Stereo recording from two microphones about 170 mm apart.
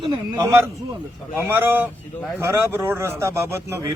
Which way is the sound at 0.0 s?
20° right (ahead or behind).